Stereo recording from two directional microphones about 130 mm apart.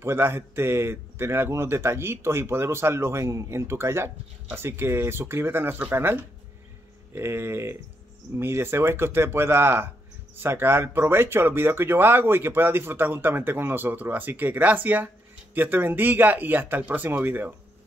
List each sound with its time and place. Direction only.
0.0 s a man's voice: 20° right (ahead or behind)